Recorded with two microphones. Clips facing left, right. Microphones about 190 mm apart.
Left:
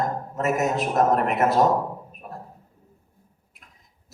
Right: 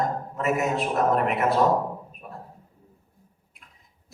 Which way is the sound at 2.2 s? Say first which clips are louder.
Left 3 dB; 40° left (ahead or behind).